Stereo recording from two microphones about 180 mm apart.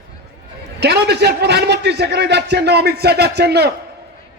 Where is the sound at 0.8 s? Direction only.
65° right (ahead or behind).